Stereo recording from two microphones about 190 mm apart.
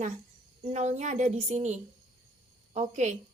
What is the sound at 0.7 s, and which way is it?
A woman's voice, 35° right (ahead or behind).